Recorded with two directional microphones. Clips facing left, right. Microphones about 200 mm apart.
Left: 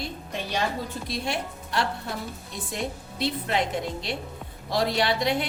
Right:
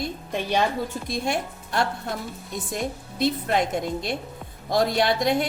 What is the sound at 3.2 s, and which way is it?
A woman's voice, 45° right (ahead or behind).